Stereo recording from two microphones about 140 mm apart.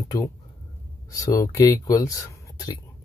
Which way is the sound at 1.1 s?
25° left (ahead or behind).